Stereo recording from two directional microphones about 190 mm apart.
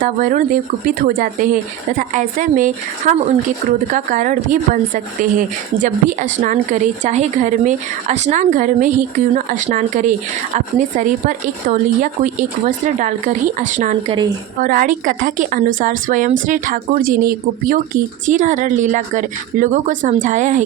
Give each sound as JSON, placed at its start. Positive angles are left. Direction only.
{"t": 0.0, "sound": "a woman's voice", "side_deg": -45}